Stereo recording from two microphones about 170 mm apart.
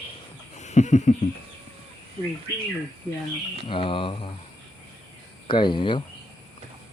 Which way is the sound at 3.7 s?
30° left (ahead or behind).